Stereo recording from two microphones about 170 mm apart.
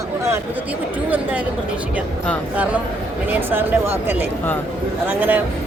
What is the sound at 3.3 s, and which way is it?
Speech, 10° right (ahead or behind).